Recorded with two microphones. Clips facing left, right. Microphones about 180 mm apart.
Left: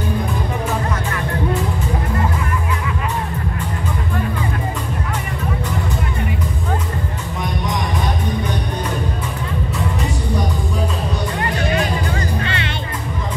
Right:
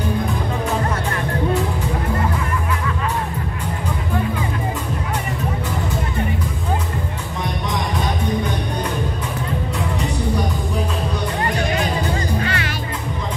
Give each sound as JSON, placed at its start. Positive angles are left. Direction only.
{"t": 12.4, "sound": "music", "side_deg": 25}